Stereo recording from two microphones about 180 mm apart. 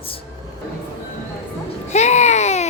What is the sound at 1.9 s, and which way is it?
Speech, 40° left (ahead or behind).